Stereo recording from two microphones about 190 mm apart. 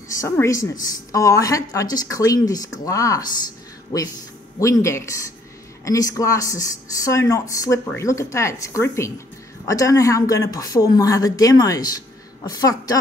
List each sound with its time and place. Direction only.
0.2 s speech: 15° left (ahead or behind)
4.6 s a woman's voice: 15° left (ahead or behind)